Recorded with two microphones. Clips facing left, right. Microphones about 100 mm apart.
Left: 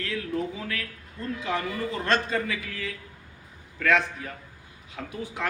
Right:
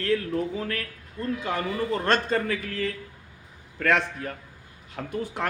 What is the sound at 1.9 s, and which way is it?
A man's voice, 50° right (ahead or behind).